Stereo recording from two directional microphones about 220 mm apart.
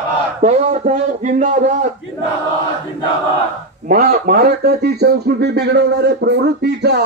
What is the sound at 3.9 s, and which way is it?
Speech, 40° right (ahead or behind).